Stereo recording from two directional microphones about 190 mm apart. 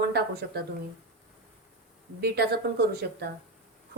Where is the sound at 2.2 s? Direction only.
55° right (ahead or behind).